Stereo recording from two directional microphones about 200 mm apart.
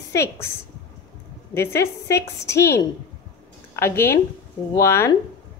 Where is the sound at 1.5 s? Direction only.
10° left (ahead or behind).